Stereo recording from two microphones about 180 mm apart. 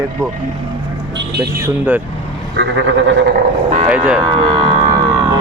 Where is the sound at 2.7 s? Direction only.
90° right.